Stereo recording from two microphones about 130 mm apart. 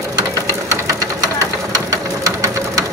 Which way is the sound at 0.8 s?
25° right (ahead or behind).